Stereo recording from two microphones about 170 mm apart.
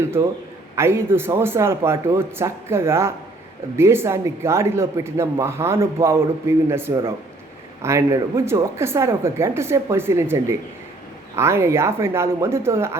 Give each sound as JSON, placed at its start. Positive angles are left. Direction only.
{"t": 0.8, "sound": "speech", "side_deg": -15}